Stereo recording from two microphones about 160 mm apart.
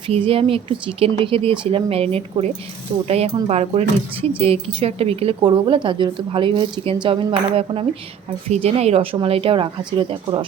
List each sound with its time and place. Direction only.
0.3 s a woman's voice: 35° right (ahead or behind)